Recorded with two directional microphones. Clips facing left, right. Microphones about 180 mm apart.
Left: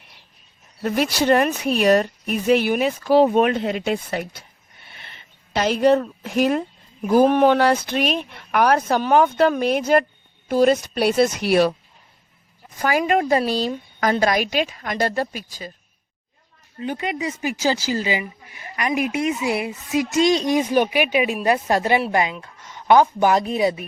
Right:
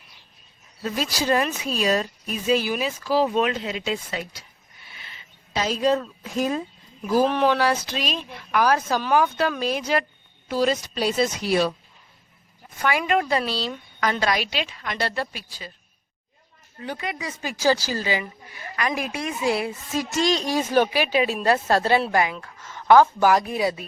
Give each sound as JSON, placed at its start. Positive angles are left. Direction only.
{"t": 0.8, "sound": "speech", "side_deg": 60}
{"t": 5.5, "sound": "a woman's voice", "side_deg": 65}
{"t": 7.1, "sound": "speech", "side_deg": 50}
{"t": 12.8, "sound": "a woman's voice", "side_deg": 40}
{"t": 16.8, "sound": "a woman's voice", "side_deg": 20}